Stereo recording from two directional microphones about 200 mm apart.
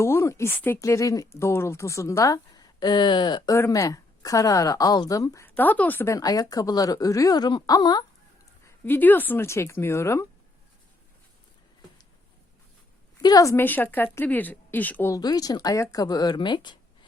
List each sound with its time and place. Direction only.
0.0 s speech: 15° left (ahead or behind)
8.6 s speech: 10° left (ahead or behind)
13.2 s speech: 15° left (ahead or behind)